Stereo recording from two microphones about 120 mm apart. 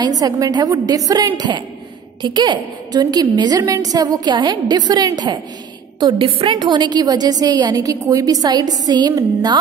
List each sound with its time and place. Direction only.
0.0 s a woman's voice: 30° right (ahead or behind)